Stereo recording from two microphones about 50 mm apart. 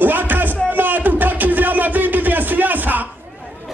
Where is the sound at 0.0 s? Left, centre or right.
Right.